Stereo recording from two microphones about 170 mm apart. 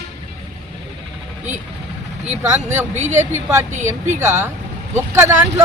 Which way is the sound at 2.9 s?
40° right (ahead or behind).